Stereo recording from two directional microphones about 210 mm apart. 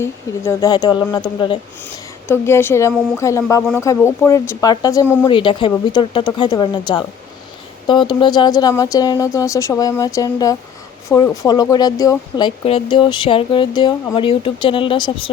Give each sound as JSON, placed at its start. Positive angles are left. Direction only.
{"t": 0.0, "sound": "speech", "side_deg": 15}
{"t": 2.2, "sound": "speech", "side_deg": 10}
{"t": 5.3, "sound": "speech", "side_deg": 25}